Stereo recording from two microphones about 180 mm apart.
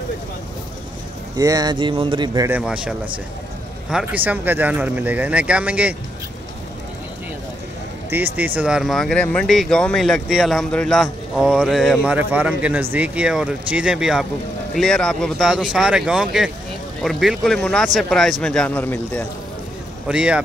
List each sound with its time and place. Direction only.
1.3 s speech: 20° right (ahead or behind)
2.5 s a man's voice: 5° right (ahead or behind)
8.4 s a man's voice: 10° right (ahead or behind); by 19.2 s 10° left (ahead or behind)
20.1 s speech: 5° right (ahead or behind)